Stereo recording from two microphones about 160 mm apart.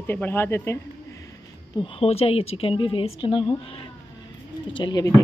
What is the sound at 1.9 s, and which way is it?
A woman's voice, 35° left (ahead or behind).